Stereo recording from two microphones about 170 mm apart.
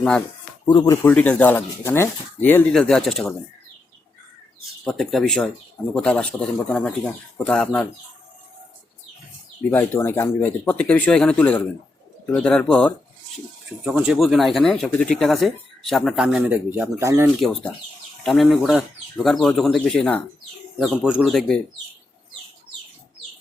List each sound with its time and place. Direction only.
0.7 s speech: 25° left (ahead or behind)
1.0 s speech: 10° left (ahead or behind)
4.8 s speech: centre (ahead or behind)
9.6 s speech: 10° left (ahead or behind)
13.8 s speech: 5° right (ahead or behind)
17.4 s speech: centre (ahead or behind)